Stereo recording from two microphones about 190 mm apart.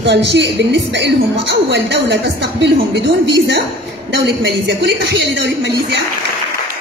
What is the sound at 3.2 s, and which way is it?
A woman's voice, 70° right (ahead or behind).